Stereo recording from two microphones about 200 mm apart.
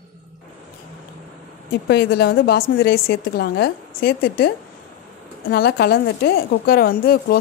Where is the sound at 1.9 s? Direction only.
55° left (ahead or behind).